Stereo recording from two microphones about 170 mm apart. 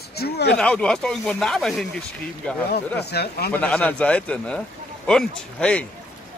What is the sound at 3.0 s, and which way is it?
Speech, 70° left (ahead or behind).